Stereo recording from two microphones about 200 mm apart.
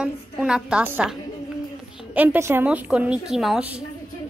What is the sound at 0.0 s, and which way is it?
A woman's voice, 5° right (ahead or behind).